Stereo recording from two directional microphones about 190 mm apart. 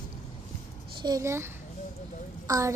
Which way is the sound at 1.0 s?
15° right (ahead or behind).